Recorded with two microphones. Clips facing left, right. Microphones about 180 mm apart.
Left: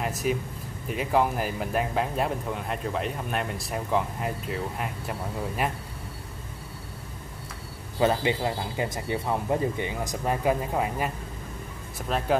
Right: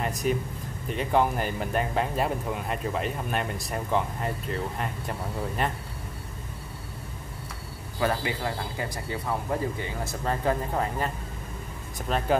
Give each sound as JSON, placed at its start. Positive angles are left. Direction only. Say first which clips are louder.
{"t": 0.0, "sound": "speech", "louder": "even", "side_deg": 5}
{"t": 8.0, "sound": "speech", "louder": "left 4 dB", "side_deg": 20}